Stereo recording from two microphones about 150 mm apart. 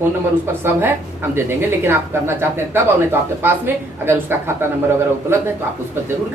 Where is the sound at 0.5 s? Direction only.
15° right (ahead or behind).